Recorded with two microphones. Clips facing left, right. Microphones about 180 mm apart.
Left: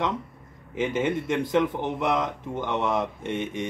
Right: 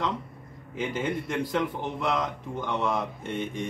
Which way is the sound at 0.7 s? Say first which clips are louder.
Left 4 dB; 20° left (ahead or behind).